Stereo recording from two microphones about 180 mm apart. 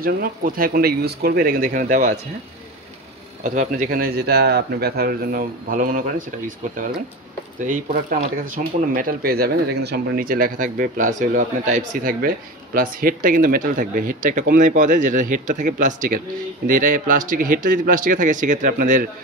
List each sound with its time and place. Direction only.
0.0 s speech: 55° right (ahead or behind)
3.4 s speech: 45° right (ahead or behind)